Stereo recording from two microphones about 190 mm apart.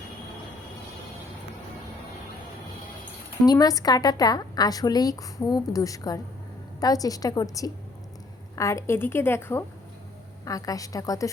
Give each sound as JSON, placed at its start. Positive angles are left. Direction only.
{"t": 3.4, "sound": "a woman's voice", "side_deg": 20}